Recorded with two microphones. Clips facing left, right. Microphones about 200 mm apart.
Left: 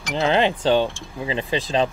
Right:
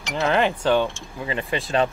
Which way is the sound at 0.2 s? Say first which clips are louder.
Left 1 dB; 25° left (ahead or behind).